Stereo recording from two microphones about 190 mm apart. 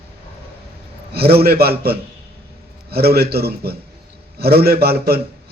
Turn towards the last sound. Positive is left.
turn(degrees=-55)  # may be behind; listen again after turning